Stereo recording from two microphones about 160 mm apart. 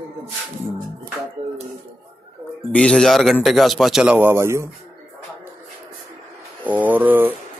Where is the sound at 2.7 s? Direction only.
5° left (ahead or behind).